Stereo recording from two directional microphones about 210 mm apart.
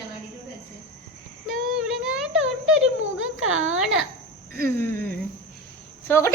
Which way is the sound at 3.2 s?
70° right (ahead or behind).